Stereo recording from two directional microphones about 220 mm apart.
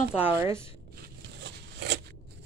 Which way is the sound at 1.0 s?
50° right (ahead or behind).